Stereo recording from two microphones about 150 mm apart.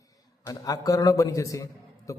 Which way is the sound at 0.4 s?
25° left (ahead or behind).